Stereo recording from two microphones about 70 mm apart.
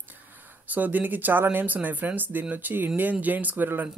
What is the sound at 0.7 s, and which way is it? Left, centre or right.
Speech, right.